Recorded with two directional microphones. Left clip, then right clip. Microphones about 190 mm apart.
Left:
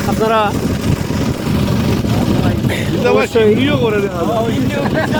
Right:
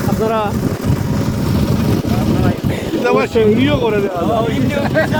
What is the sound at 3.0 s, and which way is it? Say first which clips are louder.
Speech: left 1 dB; 60° right (ahead or behind).